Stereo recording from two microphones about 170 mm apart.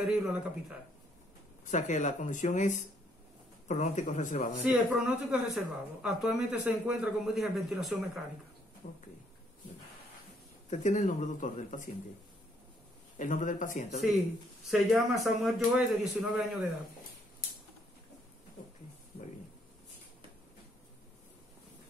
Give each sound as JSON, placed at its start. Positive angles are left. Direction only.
{"t": 0.0, "sound": "a man's voice", "side_deg": -5}
{"t": 1.7, "sound": "speech", "side_deg": 45}
{"t": 4.6, "sound": "a man's voice", "side_deg": -5}
{"t": 8.8, "sound": "speech", "side_deg": 45}
{"t": 10.7, "sound": "speech", "side_deg": 45}
{"t": 13.2, "sound": "speech", "side_deg": 50}
{"t": 14.7, "sound": "a man's voice", "side_deg": 0}